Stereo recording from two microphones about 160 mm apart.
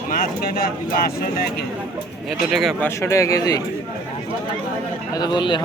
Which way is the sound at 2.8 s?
15° left (ahead or behind).